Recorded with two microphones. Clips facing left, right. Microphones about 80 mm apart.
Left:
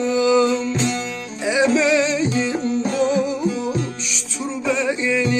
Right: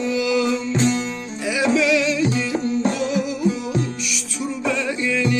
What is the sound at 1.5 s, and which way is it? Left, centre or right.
Music, left.